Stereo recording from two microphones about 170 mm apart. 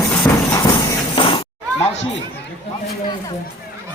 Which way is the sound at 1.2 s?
30° left (ahead or behind).